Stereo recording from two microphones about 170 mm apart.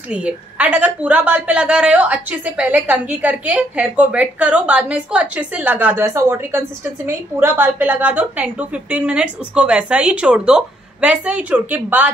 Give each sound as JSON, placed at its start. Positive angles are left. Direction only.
{"t": 0.1, "sound": "a woman's voice", "side_deg": -5}